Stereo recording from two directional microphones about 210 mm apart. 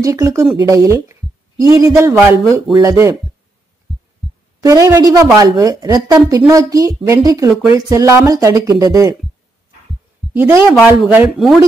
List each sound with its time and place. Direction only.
0.0 s a woman's voice: 15° right (ahead or behind)
4.6 s a woman's voice: 15° right (ahead or behind)
10.3 s speech: 10° right (ahead or behind)